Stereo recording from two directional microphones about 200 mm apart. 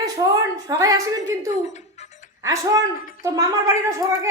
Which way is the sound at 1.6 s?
35° left (ahead or behind).